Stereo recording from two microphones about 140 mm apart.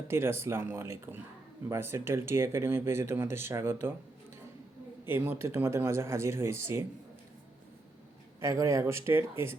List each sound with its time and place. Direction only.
0.1 s speech: 15° right (ahead or behind)
5.0 s speech: 15° right (ahead or behind)
8.4 s speech: 20° right (ahead or behind)